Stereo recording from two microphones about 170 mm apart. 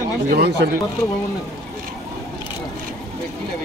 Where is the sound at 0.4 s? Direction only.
75° right (ahead or behind).